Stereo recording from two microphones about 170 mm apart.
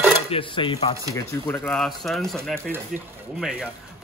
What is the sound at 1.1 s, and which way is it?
Speech, 15° left (ahead or behind).